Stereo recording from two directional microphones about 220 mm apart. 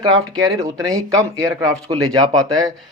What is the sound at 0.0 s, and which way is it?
Speech, 15° right (ahead or behind).